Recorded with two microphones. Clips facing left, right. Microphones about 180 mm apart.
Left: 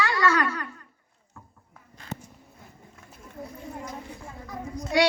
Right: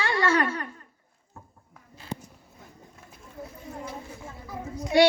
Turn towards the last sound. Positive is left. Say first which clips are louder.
# even
turn(degrees=-5)  # may be behind; listen again after turning